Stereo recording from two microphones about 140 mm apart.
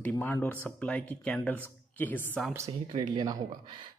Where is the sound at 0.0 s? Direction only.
15° left (ahead or behind).